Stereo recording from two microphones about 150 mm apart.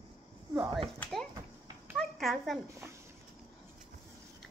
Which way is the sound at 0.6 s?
30° right (ahead or behind).